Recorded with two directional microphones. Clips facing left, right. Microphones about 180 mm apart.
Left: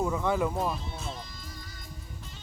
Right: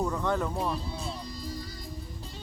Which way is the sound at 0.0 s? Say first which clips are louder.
Left 1 dB; 5° left (ahead or behind).